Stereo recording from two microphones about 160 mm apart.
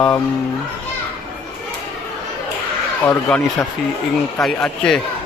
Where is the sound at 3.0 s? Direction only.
10° left (ahead or behind).